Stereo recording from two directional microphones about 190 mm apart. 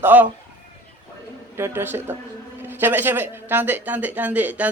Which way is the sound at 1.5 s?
10° right (ahead or behind).